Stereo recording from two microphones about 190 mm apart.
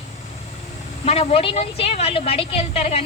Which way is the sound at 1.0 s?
35° left (ahead or behind).